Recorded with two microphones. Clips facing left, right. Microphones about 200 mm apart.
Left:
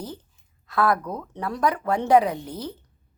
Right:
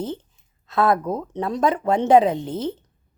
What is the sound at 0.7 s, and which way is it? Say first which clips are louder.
Speech: right 3 dB; 25° right (ahead or behind).